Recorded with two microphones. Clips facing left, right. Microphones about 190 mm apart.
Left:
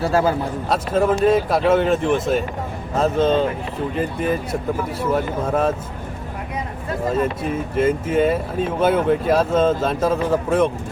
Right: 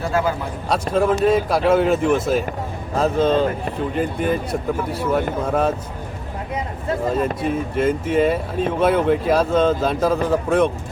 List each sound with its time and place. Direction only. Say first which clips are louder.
0.0 s a man's voice: left 3 dB; 40° left (ahead or behind)
0.7 s speech: right 1 dB; centre (ahead or behind)
7.4 s speech: even; centre (ahead or behind)